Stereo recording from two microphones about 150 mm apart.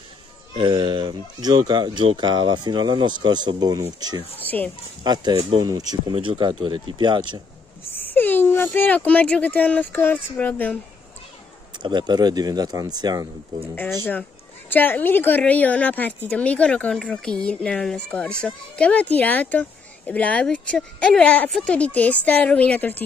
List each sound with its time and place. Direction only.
0.6 s speech: 30° right (ahead or behind)
4.4 s speech: 10° left (ahead or behind)
5.0 s speech: 30° right (ahead or behind)
7.9 s speech: 15° left (ahead or behind)
11.8 s speech: 30° right (ahead or behind)
14.7 s a woman's voice: 10° left (ahead or behind)